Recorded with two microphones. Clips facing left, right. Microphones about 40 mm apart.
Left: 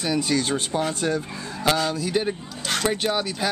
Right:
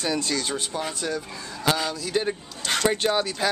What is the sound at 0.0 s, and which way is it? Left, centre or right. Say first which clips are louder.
Speech: left 3 dB; centre.